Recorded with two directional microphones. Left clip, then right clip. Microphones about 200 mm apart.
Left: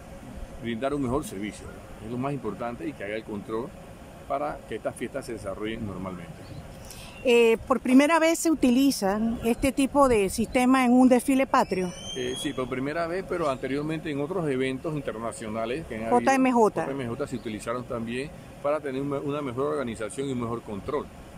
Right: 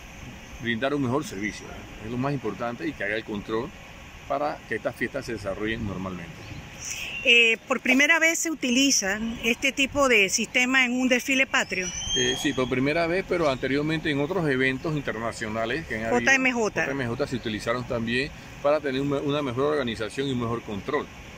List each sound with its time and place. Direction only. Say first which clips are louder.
0.7 s speech: right 2 dB; 10° left (ahead or behind)
2.2 s speech: right 2 dB; 10° left (ahead or behind)
5.3 s speech: right 3 dB; 5° right (ahead or behind)
7.2 s speech: right 1 dB; 20° left (ahead or behind)
12.2 s speech: right 5 dB; 5° left (ahead or behind)